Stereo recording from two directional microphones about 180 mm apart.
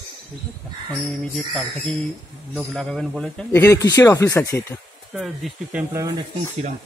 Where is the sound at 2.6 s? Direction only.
5° left (ahead or behind).